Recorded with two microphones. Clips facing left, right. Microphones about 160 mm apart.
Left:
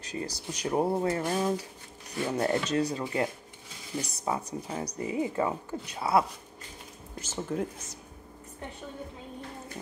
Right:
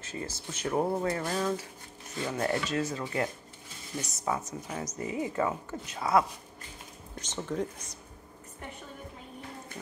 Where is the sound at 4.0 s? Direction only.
35° left (ahead or behind).